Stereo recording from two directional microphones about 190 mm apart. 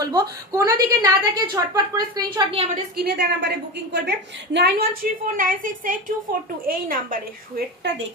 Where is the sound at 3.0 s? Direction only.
60° right (ahead or behind).